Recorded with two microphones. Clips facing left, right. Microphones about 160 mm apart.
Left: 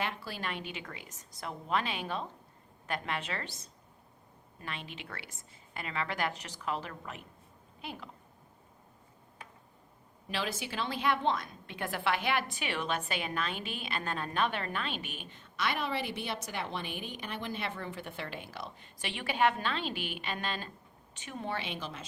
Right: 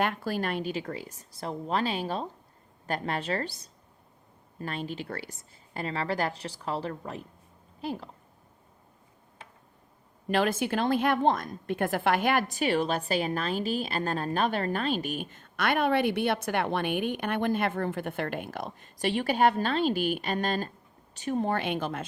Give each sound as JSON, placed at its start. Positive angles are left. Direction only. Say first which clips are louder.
{"t": 0.0, "sound": "a woman's voice", "louder": "right 8 dB", "side_deg": -50}
{"t": 10.2, "sound": "a woman's voice", "louder": "right 10 dB", "side_deg": -50}